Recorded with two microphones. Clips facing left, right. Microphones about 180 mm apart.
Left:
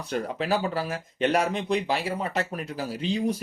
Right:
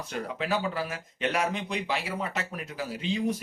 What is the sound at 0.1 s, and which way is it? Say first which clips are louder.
Speech: left 4 dB; 35° left (ahead or behind).